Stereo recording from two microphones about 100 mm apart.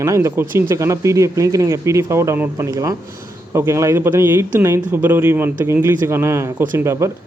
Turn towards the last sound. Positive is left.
turn(degrees=-30)  # may be behind; listen again after turning